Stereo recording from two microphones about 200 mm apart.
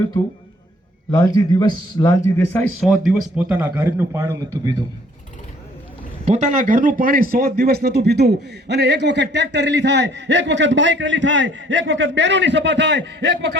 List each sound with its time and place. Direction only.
1.1 s speech: 15° left (ahead or behind); by 4.7 s 15° right (ahead or behind)
6.2 s speech: 35° right (ahead or behind); by 13.6 s 60° right (ahead or behind)